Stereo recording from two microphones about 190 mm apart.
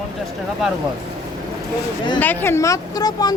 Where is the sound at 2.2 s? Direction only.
10° left (ahead or behind).